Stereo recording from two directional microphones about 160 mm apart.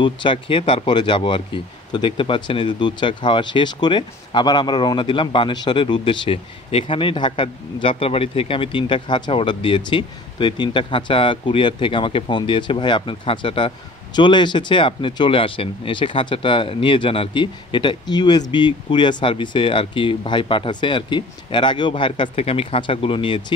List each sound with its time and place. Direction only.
0.0 s speech: 30° left (ahead or behind)